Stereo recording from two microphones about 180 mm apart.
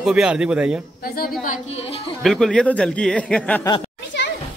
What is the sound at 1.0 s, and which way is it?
Speech, 55° left (ahead or behind).